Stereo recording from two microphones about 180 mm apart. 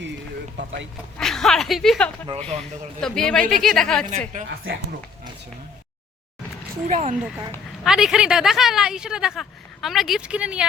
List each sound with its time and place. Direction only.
0.0 s a sound: 70° right (ahead or behind)
1.2 s speech: centre (ahead or behind)
4.7 s speech: 90° right
6.8 s speech: 40° right (ahead or behind)
7.9 s speech: 5° right (ahead or behind)